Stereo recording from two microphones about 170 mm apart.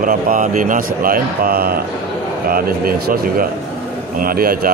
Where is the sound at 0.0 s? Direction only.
55° right (ahead or behind).